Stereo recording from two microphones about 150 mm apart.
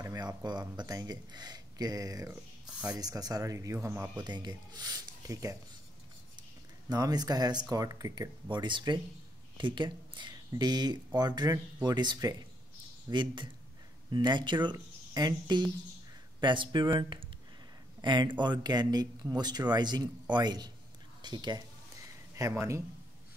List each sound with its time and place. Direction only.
0.0 s speech: 25° right (ahead or behind)
2.6 s a sound: 5° right (ahead or behind)
2.9 s speech: 25° right (ahead or behind)
4.2 s speech: 30° right (ahead or behind)
6.9 s speech: 25° right (ahead or behind)
18.0 s speech: 30° right (ahead or behind)